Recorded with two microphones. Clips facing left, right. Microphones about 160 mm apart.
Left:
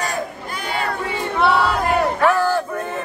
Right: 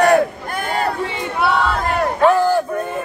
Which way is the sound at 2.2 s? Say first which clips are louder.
Right 7 dB; 15° right (ahead or behind).